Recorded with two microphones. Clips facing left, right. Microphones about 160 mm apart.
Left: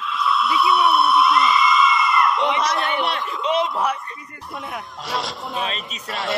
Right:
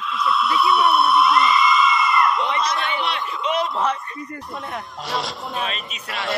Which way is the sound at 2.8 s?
50° left (ahead or behind).